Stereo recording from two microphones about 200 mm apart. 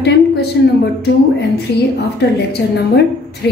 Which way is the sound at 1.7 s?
55° left (ahead or behind).